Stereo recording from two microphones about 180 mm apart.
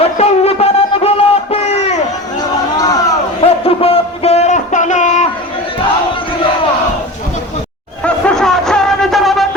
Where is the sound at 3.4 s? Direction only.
30° left (ahead or behind).